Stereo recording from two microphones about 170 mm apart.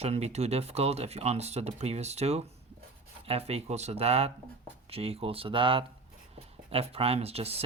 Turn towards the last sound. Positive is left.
turn(degrees=-35)  # may be behind; listen again after turning